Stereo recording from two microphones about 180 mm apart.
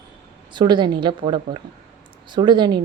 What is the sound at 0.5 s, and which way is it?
A woman's voice, 25° right (ahead or behind).